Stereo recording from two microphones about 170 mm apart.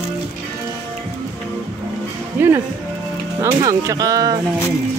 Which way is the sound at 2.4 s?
15° right (ahead or behind).